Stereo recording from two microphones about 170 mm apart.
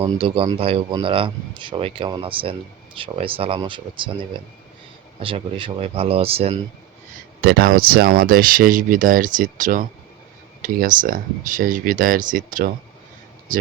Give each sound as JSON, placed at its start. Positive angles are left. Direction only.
{"t": 0.0, "sound": "speech", "side_deg": -30}
{"t": 7.4, "sound": "speech", "side_deg": -60}